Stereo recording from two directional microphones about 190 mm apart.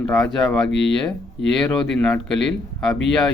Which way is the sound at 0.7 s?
70° left (ahead or behind).